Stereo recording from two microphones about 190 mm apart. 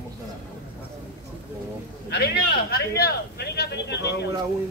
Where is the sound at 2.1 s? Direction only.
60° left (ahead or behind).